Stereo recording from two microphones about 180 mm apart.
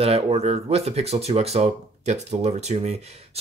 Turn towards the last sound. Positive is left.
turn(degrees=-35)  # may be behind; listen again after turning